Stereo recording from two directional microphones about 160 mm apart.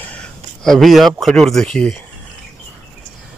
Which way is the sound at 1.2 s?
Centre (ahead or behind).